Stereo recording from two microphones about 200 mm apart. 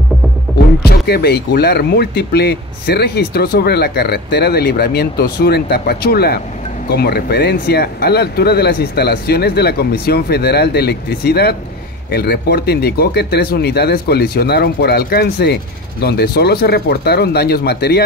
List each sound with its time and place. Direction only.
0.8 s speech: 55° left (ahead or behind)